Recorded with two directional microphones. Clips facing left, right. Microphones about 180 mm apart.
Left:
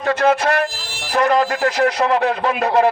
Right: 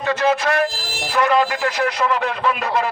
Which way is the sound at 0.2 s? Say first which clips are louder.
Left 1 dB; 50° left (ahead or behind).